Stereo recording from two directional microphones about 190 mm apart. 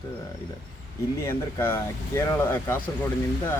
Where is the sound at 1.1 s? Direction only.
15° left (ahead or behind).